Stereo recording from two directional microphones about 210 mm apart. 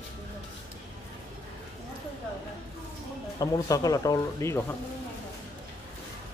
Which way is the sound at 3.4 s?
15° left (ahead or behind).